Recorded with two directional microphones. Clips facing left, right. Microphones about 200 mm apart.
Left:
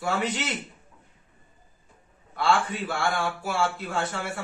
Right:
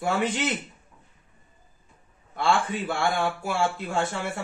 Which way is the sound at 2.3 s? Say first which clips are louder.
Even; 50° right (ahead or behind).